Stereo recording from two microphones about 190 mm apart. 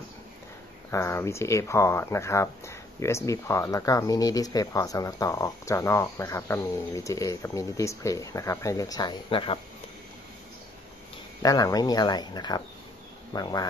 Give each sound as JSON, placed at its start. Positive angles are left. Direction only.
{"t": 0.9, "sound": "speech", "side_deg": 15}
{"t": 11.4, "sound": "speech", "side_deg": 20}